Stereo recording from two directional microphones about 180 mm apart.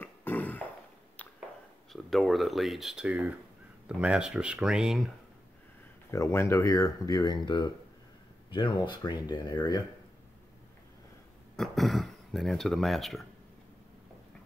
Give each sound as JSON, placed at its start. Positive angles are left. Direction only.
{"t": 0.0, "sound": "a sound", "side_deg": 10}
{"t": 1.9, "sound": "speech", "side_deg": 0}
{"t": 6.1, "sound": "speech", "side_deg": 15}
{"t": 11.5, "sound": "speech", "side_deg": 0}